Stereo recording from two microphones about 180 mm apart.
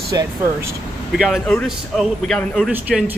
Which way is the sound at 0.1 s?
20° right (ahead or behind).